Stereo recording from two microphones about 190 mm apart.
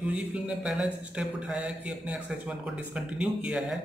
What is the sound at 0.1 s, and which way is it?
A man's voice, 5° right (ahead or behind).